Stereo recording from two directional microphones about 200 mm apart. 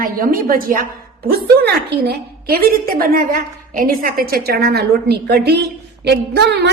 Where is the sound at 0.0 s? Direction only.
45° right (ahead or behind).